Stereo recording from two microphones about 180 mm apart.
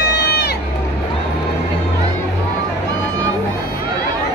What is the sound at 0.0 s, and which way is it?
Run, 65° left (ahead or behind).